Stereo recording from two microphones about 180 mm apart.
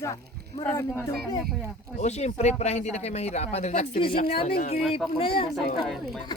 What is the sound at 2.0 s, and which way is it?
Speech, 40° left (ahead or behind).